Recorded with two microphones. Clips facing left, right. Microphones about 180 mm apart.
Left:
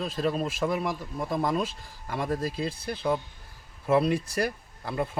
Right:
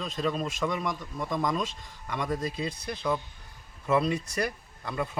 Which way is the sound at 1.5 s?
10° left (ahead or behind).